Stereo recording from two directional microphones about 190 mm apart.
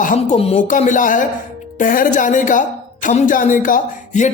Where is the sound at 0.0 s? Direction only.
40° left (ahead or behind).